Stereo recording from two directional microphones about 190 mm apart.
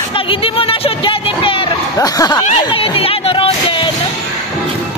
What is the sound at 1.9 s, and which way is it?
Speech, 20° left (ahead or behind).